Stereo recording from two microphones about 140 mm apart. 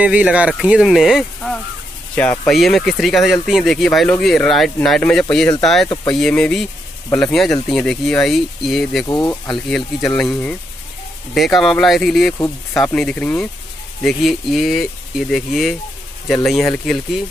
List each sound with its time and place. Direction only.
0.0 s speech: 10° right (ahead or behind)
9.0 s speech: 20° left (ahead or behind)
9.7 s speech: 5° left (ahead or behind)
11.3 s speech: centre (ahead or behind)